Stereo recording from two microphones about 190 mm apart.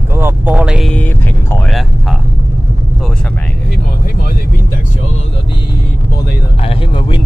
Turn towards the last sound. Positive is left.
turn(degrees=25)  # may be behind; listen again after turning